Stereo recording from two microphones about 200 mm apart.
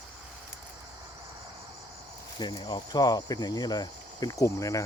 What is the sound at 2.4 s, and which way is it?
Speech, 20° left (ahead or behind).